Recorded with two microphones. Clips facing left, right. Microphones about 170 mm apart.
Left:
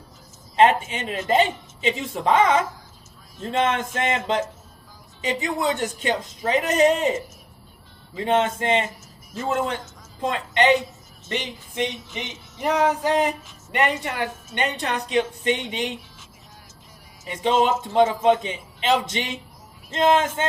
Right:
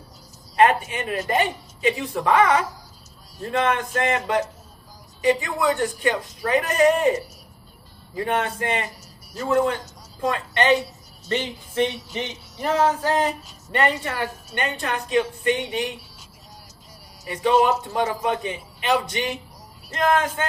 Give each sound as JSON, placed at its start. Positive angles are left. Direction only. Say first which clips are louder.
{"t": 0.5, "sound": "a sound", "louder": "even", "side_deg": 20}
{"t": 0.9, "sound": "a man's voice", "louder": "left 1 dB", "side_deg": 20}
{"t": 8.2, "sound": "a man's voice", "louder": "left 3 dB", "side_deg": 20}
{"t": 10.2, "sound": "speech", "louder": "left 1 dB", "side_deg": 20}
{"t": 11.3, "sound": "music", "louder": "right 3 dB", "side_deg": 15}
{"t": 14.0, "sound": "a man's voice", "louder": "even", "side_deg": 20}
{"t": 17.2, "sound": "a man's voice", "louder": "right 1 dB", "side_deg": 20}